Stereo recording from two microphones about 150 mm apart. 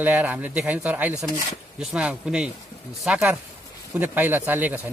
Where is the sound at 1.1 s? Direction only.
25° left (ahead or behind).